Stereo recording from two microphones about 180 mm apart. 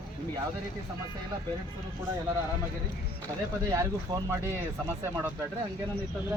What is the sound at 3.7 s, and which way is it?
Speech, 20° right (ahead or behind).